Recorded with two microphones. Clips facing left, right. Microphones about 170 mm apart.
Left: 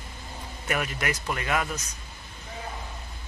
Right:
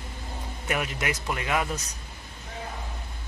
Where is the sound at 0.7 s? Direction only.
15° right (ahead or behind).